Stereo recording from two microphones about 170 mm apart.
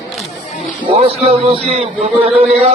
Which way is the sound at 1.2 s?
35° right (ahead or behind).